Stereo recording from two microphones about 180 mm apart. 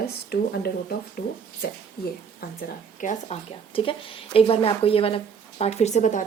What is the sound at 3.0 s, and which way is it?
Speech, 35° left (ahead or behind).